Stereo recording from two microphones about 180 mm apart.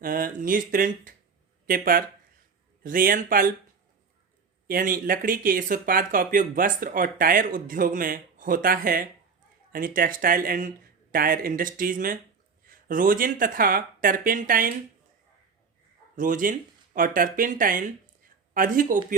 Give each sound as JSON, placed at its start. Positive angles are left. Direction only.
{"t": 0.0, "sound": "speech", "side_deg": -50}
{"t": 4.7, "sound": "speech", "side_deg": -50}
{"t": 16.1, "sound": "speech", "side_deg": -50}